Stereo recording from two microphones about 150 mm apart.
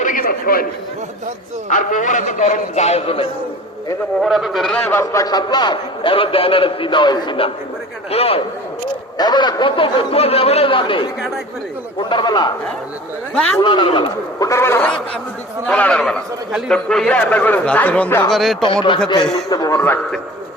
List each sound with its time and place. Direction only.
0.0 s chatter: 65° left (ahead or behind)
1.7 s a man's voice: 60° left (ahead or behind); by 3.2 s 40° left (ahead or behind)
4.2 s a man's voice: centre (ahead or behind); by 8.4 s 40° left (ahead or behind)
9.1 s a man's voice: 30° left (ahead or behind)
13.6 s a man's voice: 30° left (ahead or behind); by 18.5 s centre (ahead or behind)
18.6 s a man's voice: 35° left (ahead or behind); by 20.0 s 20° left (ahead or behind)